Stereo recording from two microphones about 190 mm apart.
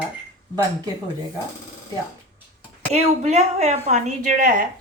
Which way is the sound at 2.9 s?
35° right (ahead or behind).